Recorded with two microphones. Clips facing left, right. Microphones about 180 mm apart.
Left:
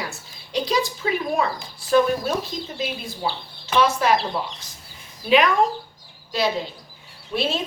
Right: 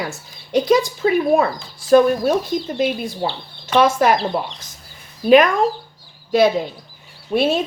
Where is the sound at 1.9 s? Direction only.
50° right (ahead or behind).